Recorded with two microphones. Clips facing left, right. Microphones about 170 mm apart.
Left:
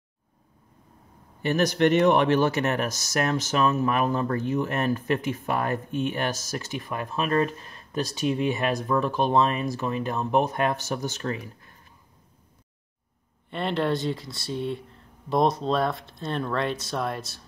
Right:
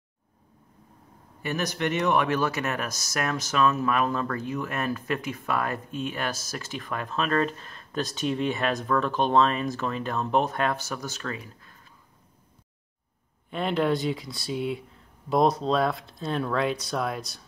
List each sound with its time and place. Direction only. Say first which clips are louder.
2.0 s speech: left 4 dB; 30° left (ahead or behind)
13.5 s speech: right 1 dB; 5° right (ahead or behind)